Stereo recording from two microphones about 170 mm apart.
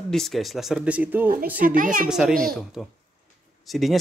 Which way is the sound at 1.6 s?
55° right (ahead or behind).